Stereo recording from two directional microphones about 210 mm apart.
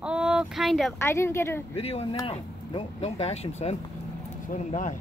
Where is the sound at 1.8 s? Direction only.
30° left (ahead or behind).